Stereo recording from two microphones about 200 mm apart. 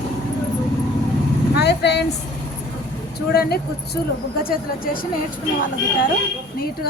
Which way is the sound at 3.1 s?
50° left (ahead or behind).